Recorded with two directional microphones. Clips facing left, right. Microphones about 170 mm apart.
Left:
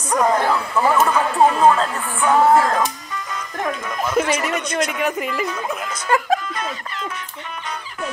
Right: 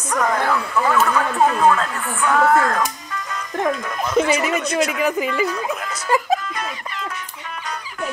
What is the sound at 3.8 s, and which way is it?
Speech, centre (ahead or behind).